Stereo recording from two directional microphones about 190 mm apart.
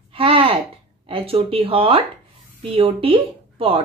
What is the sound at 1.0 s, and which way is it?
Speech, 30° right (ahead or behind).